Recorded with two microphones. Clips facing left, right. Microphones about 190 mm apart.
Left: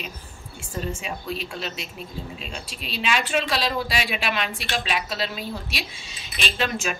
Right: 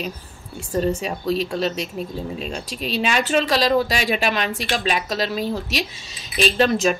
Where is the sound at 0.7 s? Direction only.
40° right (ahead or behind).